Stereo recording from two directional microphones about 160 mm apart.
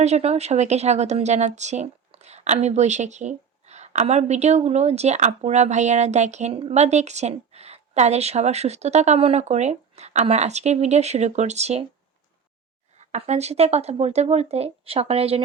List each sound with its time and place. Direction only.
0.0 s speech: 40° right (ahead or behind)
13.0 s speech: 45° right (ahead or behind)